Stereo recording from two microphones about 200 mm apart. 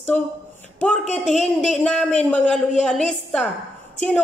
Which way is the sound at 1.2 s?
35° left (ahead or behind).